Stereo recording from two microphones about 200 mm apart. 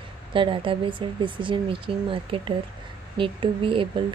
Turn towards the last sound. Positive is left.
turn(degrees=-25)  # may be behind; listen again after turning